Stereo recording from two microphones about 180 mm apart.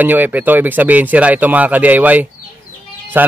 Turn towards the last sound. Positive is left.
turn(degrees=-10)  # may be behind; listen again after turning